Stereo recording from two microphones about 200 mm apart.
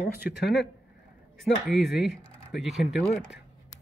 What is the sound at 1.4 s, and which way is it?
Speech, centre (ahead or behind).